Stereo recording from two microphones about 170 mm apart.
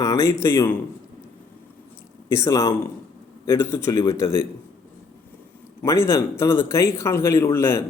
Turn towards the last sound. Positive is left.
turn(degrees=15)  # may be behind; listen again after turning